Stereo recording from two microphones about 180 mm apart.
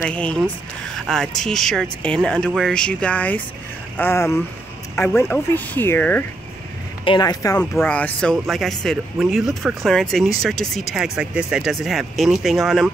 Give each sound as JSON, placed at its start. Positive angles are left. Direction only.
{"t": 0.0, "sound": "speech", "side_deg": 5}
{"t": 7.1, "sound": "speech", "side_deg": 20}
{"t": 7.7, "sound": "speech", "side_deg": 10}